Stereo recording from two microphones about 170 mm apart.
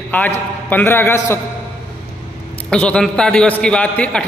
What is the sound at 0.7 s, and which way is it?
Speech, 10° left (ahead or behind).